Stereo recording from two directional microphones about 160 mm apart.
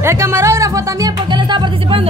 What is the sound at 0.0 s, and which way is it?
Speech, 15° right (ahead or behind).